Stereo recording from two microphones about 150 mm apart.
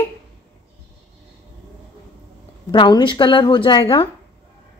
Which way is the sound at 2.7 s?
30° left (ahead or behind).